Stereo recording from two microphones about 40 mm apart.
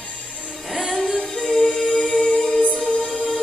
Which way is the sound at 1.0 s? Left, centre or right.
Centre.